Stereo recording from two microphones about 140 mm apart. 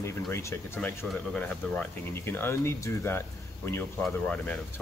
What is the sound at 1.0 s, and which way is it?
Speech, 10° left (ahead or behind).